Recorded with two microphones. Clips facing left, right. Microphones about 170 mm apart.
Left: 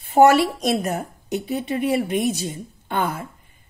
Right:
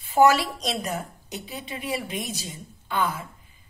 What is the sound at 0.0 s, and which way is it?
A woman's voice, 60° left (ahead or behind).